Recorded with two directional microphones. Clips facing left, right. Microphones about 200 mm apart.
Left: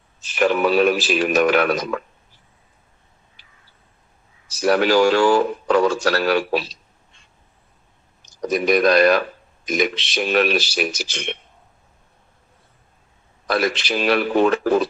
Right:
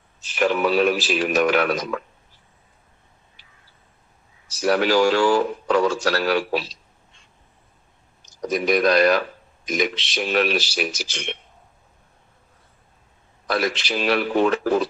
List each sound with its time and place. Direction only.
0.2 s speech: 55° left (ahead or behind)
4.6 s speech: 55° left (ahead or behind)
8.4 s speech: 55° left (ahead or behind)
13.5 s speech: 55° left (ahead or behind)